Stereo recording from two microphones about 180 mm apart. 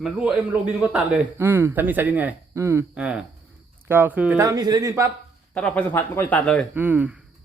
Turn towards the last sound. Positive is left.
turn(degrees=-10)  # may be behind; listen again after turning